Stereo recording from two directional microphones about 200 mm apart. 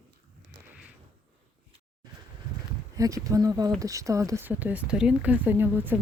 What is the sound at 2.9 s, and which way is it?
Speech, 15° right (ahead or behind).